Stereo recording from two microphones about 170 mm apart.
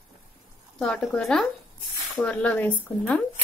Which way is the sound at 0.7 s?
5° left (ahead or behind).